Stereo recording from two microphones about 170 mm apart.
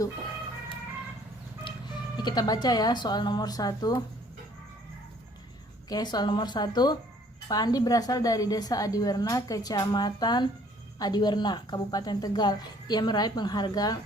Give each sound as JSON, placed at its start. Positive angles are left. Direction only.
{"t": 1.6, "sound": "speech", "side_deg": 25}
{"t": 5.9, "sound": "a woman's voice", "side_deg": 25}